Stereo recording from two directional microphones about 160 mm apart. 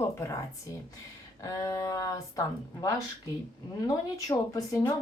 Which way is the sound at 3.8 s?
20° left (ahead or behind).